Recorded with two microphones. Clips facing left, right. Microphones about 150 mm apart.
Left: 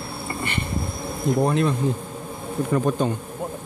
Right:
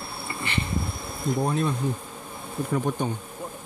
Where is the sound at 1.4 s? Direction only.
80° left.